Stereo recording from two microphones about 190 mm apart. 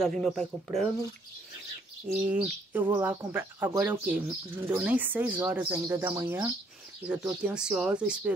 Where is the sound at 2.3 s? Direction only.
10° right (ahead or behind).